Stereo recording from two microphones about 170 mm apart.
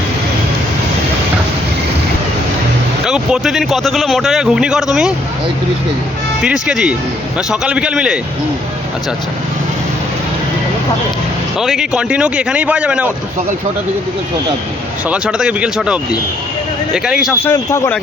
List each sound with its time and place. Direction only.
3.0 s speech: 5° right (ahead or behind)
6.4 s speech: 5° right (ahead or behind)
11.6 s speech: centre (ahead or behind)
15.1 s speech: 5° right (ahead or behind)
17.4 s speech: 15° left (ahead or behind)